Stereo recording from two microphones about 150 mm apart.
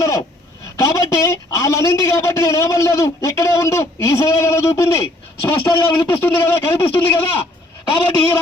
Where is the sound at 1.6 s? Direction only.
20° left (ahead or behind).